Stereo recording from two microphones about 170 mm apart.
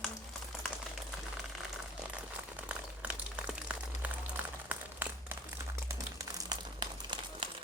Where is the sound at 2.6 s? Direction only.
5° right (ahead or behind).